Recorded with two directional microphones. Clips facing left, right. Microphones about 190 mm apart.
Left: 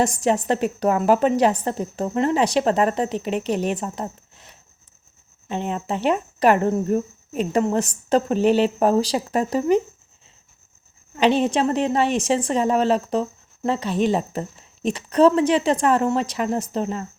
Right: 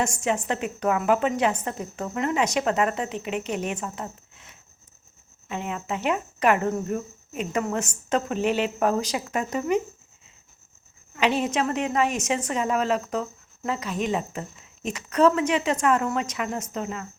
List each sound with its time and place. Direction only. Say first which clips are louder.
0.0 s a woman's voice: left 5 dB; 35° left (ahead or behind)
11.1 s a woman's voice: left 5 dB; 30° left (ahead or behind)